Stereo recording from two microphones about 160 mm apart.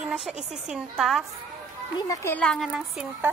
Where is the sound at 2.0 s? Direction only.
20° left (ahead or behind); by 3.3 s 5° right (ahead or behind).